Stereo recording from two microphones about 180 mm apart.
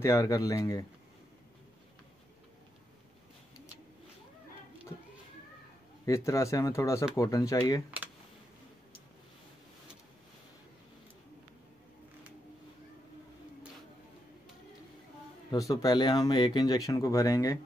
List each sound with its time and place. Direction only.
0.0 s speech: 15° left (ahead or behind)
6.0 s speech: 15° left (ahead or behind)
15.5 s speech: 20° left (ahead or behind)